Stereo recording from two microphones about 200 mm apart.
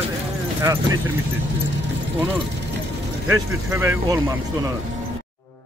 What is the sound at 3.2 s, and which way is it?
Speech, 10° right (ahead or behind).